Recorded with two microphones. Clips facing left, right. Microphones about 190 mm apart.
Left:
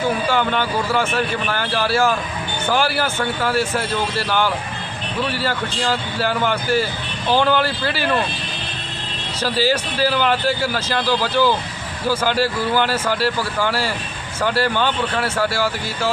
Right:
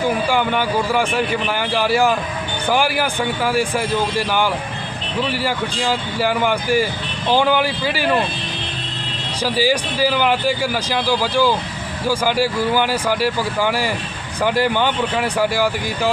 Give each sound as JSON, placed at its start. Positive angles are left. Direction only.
{"t": 0.3, "sound": "a man's voice", "side_deg": -10}
{"t": 9.4, "sound": "a man's voice", "side_deg": -15}